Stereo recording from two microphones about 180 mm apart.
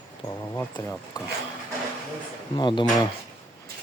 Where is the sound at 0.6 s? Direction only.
10° left (ahead or behind).